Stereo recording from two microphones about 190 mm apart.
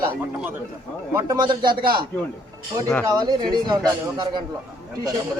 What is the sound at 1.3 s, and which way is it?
Speech, 25° right (ahead or behind).